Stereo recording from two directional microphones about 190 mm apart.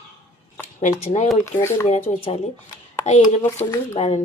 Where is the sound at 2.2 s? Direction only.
35° left (ahead or behind).